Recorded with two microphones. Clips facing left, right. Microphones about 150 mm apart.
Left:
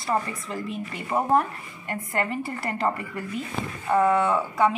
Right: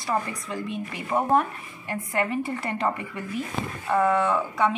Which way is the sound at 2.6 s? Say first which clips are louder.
Even; 25° right (ahead or behind).